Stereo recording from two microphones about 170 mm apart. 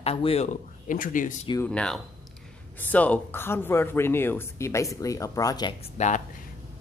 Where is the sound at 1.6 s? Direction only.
5° left (ahead or behind); by 5.7 s 20° left (ahead or behind).